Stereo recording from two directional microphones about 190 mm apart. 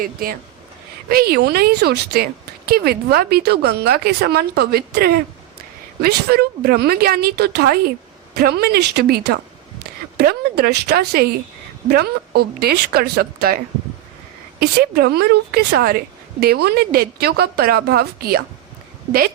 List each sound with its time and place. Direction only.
0.0 s speech: 50° right (ahead or behind)
14.6 s speech: 55° right (ahead or behind)